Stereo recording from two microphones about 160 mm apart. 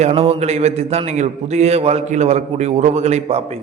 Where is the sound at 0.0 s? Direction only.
40° right (ahead or behind).